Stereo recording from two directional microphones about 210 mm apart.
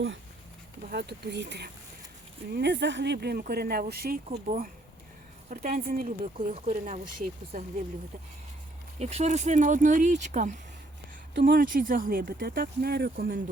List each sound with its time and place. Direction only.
0.9 s speech: 50° right (ahead or behind)
9.0 s speech: 30° right (ahead or behind)